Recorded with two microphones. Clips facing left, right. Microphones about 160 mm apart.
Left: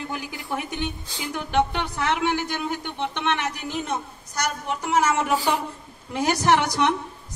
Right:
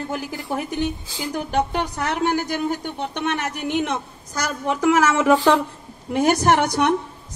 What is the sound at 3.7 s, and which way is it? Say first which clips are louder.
A woman's voice: right 5 dB; 90° right.